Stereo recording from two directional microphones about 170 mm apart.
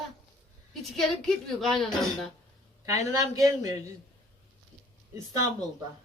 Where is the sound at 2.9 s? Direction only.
20° right (ahead or behind).